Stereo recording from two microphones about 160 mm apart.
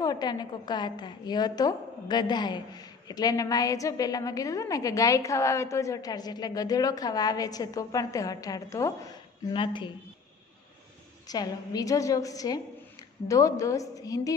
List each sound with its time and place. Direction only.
0.0 s a woman's voice: 25° left (ahead or behind)
11.2 s a woman's voice: 25° left (ahead or behind)